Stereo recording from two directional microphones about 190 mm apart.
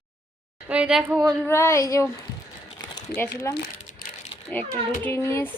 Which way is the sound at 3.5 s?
55° left (ahead or behind).